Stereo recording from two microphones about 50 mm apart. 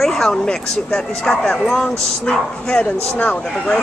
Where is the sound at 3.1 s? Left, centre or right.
Left.